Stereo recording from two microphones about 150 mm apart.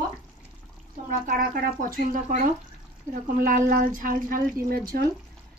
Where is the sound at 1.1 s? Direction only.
70° right (ahead or behind).